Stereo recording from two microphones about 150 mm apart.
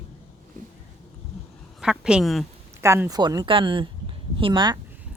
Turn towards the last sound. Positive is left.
turn(degrees=-30)  # may be behind; listen again after turning